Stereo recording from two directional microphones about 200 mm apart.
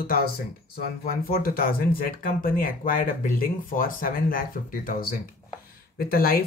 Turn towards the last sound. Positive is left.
turn(degrees=50)  # may be behind; listen again after turning